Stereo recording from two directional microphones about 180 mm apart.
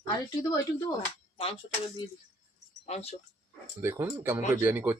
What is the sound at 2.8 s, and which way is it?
Speech, 40° left (ahead or behind).